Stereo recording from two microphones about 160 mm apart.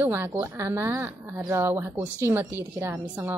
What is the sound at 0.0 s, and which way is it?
A woman's voice, 15° right (ahead or behind).